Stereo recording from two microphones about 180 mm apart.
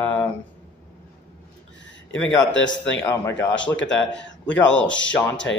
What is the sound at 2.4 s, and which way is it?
Speech, 90° left.